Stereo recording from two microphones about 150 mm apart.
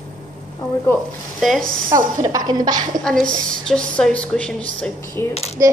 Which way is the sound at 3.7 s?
5° left (ahead or behind).